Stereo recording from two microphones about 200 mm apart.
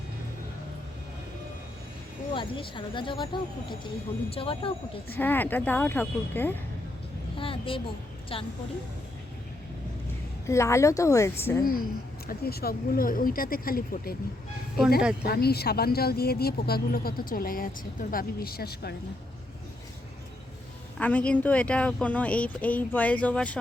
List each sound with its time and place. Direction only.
2.3 s speech: 25° left (ahead or behind)
5.1 s speech: 10° left (ahead or behind)
7.3 s a sound: 25° left (ahead or behind)
10.4 s speech: 15° left (ahead or behind)
12.3 s speech: 50° left (ahead or behind)
15.2 s speech: 50° left (ahead or behind)
21.0 s speech: 5° left (ahead or behind)